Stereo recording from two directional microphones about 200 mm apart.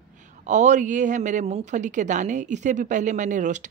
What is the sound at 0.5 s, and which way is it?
A woman's voice, 40° right (ahead or behind).